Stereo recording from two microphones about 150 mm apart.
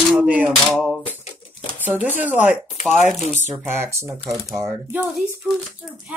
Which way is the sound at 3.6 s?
15° right (ahead or behind).